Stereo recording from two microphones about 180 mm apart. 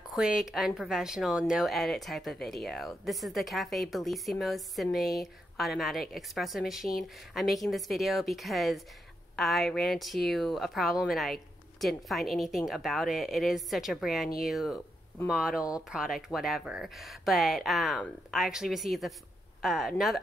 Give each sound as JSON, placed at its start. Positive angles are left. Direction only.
{"t": 0.1, "sound": "a woman's voice", "side_deg": -5}